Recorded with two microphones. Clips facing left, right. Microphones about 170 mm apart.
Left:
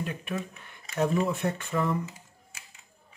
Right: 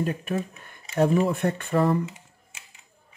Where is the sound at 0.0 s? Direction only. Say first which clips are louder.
Right 6 dB; 40° right (ahead or behind).